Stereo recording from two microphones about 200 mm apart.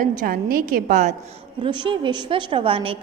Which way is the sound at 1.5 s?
25° right (ahead or behind).